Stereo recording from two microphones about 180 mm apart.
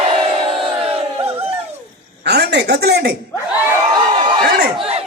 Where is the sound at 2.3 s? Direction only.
70° right (ahead or behind).